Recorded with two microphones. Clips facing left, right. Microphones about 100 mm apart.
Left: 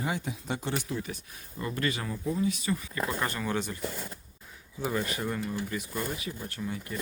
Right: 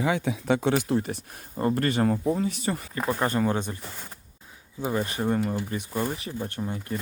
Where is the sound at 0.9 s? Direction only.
55° right (ahead or behind).